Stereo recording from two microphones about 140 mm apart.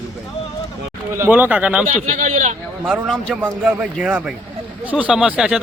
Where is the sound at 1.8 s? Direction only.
60° right (ahead or behind).